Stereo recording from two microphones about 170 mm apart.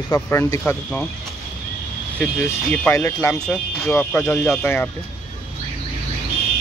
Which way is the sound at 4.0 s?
15° left (ahead or behind).